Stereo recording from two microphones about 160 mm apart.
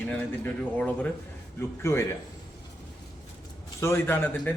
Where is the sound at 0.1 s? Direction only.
10° left (ahead or behind).